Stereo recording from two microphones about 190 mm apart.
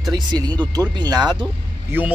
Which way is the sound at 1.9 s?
10° right (ahead or behind).